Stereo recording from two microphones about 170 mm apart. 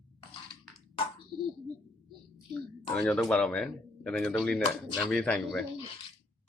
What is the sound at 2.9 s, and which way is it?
Speech, 5° left (ahead or behind).